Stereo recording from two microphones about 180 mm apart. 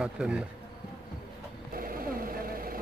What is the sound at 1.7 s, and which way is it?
Vehicle, 55° right (ahead or behind).